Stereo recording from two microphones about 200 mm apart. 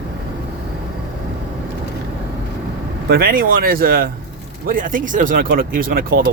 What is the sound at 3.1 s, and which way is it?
Speech, 50° right (ahead or behind).